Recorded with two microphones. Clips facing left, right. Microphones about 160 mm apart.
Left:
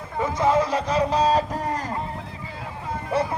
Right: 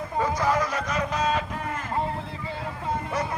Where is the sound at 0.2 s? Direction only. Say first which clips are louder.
Left 4 dB; 25° left (ahead or behind).